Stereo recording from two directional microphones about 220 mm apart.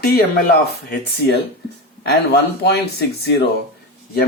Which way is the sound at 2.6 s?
45° left (ahead or behind).